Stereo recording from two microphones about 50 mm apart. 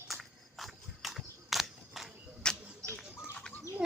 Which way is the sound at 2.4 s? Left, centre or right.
Centre.